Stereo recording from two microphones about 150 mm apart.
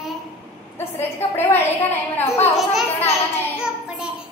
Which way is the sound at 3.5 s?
5° right (ahead or behind).